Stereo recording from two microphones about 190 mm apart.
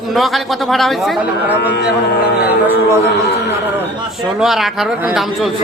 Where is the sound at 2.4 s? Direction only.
10° right (ahead or behind).